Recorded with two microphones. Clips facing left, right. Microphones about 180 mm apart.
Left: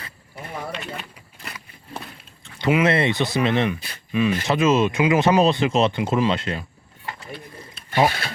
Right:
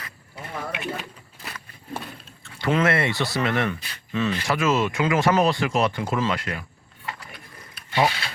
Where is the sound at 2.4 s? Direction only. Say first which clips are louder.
Left 3 dB; 15° left (ahead or behind).